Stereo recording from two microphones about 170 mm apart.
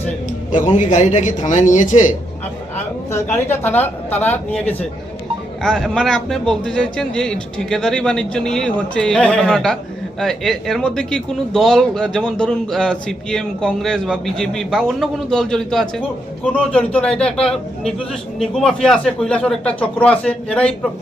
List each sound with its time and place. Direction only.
0.3 s speech: 45° left (ahead or behind)
3.1 s speech: 15° left (ahead or behind)